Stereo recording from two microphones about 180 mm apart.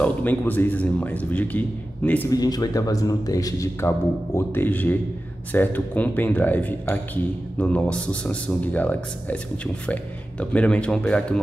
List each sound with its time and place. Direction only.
0.0 s speech: 10° left (ahead or behind)
2.3 s speech: 20° left (ahead or behind)
10.5 s speech: 5° left (ahead or behind)